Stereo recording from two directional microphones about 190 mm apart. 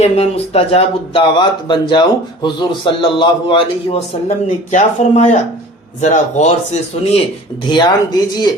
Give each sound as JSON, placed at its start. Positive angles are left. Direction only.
{"t": 0.0, "sound": "speech", "side_deg": 35}
{"t": 7.7, "sound": "speech", "side_deg": 20}